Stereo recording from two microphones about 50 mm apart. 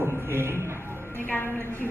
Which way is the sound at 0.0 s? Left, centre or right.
Right.